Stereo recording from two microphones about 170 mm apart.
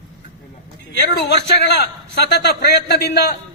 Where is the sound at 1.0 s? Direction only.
85° left.